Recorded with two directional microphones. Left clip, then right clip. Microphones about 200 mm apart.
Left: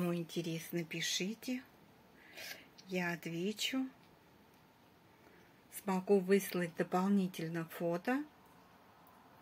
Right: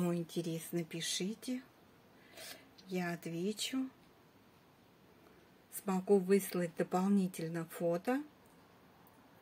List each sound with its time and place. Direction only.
0.1 s speech: 10° right (ahead or behind)
5.9 s speech: 5° right (ahead or behind)